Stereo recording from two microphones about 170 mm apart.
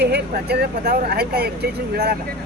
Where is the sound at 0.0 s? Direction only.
75° right (ahead or behind).